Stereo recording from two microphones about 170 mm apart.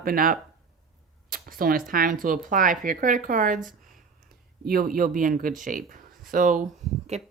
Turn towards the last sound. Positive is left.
turn(degrees=-40)  # may be behind; listen again after turning